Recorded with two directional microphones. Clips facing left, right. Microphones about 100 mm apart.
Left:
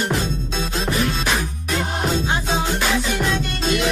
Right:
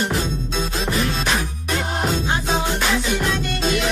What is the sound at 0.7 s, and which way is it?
Music, centre (ahead or behind).